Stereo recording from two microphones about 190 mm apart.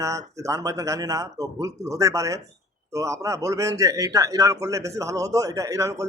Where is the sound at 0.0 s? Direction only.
15° right (ahead or behind).